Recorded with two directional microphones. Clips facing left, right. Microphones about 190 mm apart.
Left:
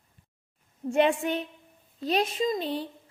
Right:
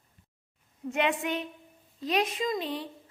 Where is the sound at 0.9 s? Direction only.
35° left (ahead or behind).